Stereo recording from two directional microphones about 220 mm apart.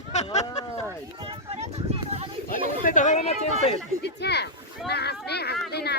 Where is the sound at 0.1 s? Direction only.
30° left (ahead or behind).